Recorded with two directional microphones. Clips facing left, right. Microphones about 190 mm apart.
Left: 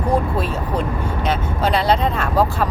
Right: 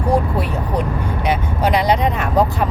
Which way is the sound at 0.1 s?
15° right (ahead or behind).